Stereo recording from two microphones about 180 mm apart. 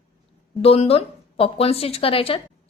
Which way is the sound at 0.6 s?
30° left (ahead or behind).